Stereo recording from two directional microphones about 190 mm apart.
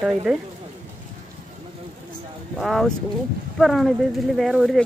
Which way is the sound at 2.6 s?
Centre (ahead or behind).